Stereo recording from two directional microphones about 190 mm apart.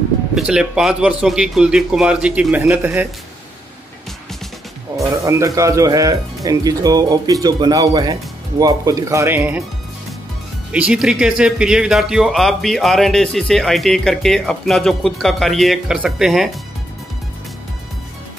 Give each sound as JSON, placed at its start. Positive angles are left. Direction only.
{"t": 0.3, "sound": "speech", "side_deg": -5}
{"t": 4.9, "sound": "speech", "side_deg": -15}
{"t": 10.7, "sound": "speech", "side_deg": -5}